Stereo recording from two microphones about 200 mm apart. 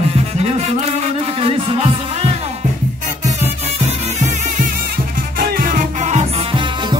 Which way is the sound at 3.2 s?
35° right (ahead or behind).